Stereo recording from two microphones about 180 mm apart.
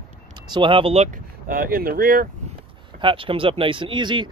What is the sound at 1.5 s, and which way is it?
Speech, 55° right (ahead or behind).